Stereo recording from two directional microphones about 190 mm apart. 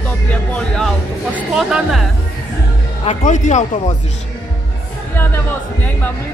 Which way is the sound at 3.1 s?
40° left (ahead or behind).